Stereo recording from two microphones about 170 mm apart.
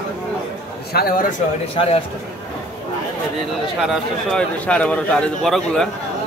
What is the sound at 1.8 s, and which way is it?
Speech, 35° left (ahead or behind).